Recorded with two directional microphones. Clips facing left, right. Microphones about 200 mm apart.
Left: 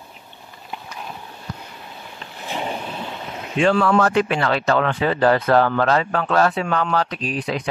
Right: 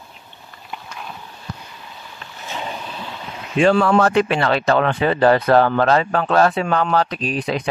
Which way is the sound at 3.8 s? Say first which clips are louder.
Right 2 dB; 25° right (ahead or behind).